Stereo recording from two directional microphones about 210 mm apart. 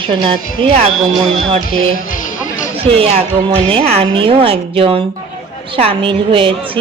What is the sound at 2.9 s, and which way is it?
A woman's voice, 25° right (ahead or behind).